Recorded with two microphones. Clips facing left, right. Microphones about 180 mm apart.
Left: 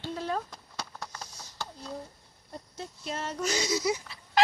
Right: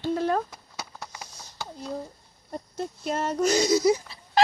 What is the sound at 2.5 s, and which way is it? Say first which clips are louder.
Speech: right 8 dB; 50° right (ahead or behind).